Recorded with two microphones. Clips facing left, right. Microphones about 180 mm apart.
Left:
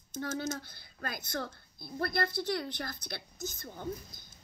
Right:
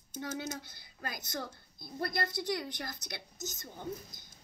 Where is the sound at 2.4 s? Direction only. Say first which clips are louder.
Left 2 dB; 15° right (ahead or behind).